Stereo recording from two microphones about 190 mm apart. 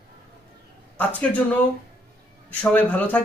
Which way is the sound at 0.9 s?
10° left (ahead or behind).